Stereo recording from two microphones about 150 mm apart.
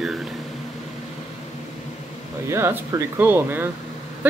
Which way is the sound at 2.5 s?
15° right (ahead or behind).